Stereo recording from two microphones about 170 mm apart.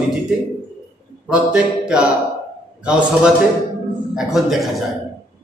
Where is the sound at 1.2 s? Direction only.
5° right (ahead or behind).